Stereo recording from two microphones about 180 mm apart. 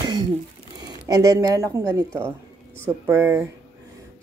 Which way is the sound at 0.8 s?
20° right (ahead or behind).